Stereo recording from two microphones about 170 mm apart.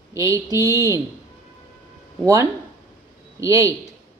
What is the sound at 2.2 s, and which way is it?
Speech, 20° right (ahead or behind).